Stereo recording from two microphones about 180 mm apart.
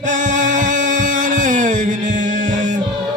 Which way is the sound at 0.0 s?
45° right (ahead or behind).